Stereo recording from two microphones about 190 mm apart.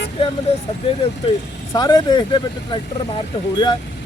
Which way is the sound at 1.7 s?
20° left (ahead or behind).